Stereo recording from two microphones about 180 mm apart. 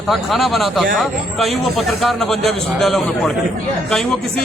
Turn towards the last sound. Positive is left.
turn(degrees=0)  # may be behind; listen again after turning